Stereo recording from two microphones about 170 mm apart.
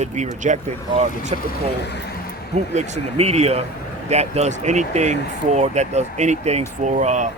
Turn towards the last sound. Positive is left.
turn(degrees=-45)  # may be behind; listen again after turning